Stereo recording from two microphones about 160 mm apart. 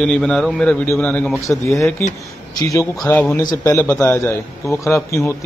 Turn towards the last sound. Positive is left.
turn(degrees=15)  # may be behind; listen again after turning